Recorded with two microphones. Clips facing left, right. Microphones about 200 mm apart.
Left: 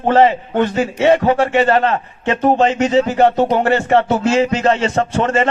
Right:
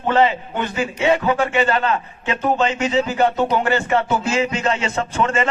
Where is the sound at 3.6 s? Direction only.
70° left (ahead or behind).